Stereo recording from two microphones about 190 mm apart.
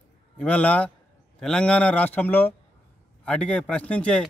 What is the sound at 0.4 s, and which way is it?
A man's voice, 5° left (ahead or behind).